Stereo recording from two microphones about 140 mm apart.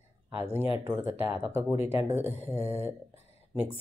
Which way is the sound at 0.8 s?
15° right (ahead or behind).